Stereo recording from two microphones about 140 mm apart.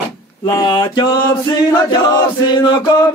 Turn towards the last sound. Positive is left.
turn(degrees=30)  # may be behind; listen again after turning